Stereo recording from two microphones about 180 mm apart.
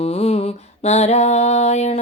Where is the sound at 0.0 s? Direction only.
35° left (ahead or behind).